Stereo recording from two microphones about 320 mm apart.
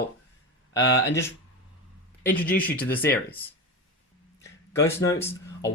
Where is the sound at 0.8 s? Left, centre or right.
Left.